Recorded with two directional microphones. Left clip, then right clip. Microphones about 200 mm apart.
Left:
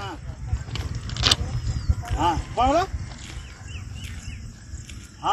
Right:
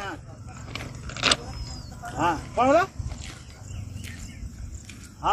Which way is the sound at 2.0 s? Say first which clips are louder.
Left 2 dB; 10° right (ahead or behind).